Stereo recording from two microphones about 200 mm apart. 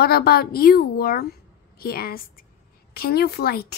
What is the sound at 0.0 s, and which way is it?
A woman's voice, 50° left (ahead or behind).